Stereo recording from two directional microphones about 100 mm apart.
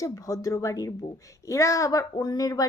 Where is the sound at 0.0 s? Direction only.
35° left (ahead or behind).